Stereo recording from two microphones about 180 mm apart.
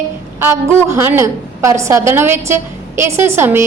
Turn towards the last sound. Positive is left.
turn(degrees=-15)  # may be behind; listen again after turning